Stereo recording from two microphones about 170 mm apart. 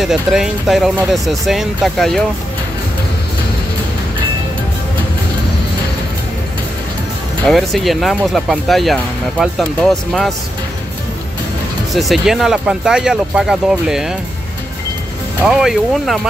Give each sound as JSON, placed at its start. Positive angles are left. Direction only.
{"t": 0.0, "sound": "speech", "side_deg": 0}
{"t": 7.4, "sound": "speech", "side_deg": 0}
{"t": 11.9, "sound": "speech", "side_deg": 0}
{"t": 15.4, "sound": "speech", "side_deg": -5}